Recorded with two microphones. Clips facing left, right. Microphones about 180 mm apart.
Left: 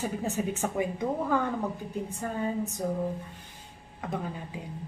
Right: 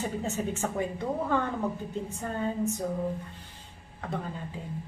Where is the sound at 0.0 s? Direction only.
10° left (ahead or behind).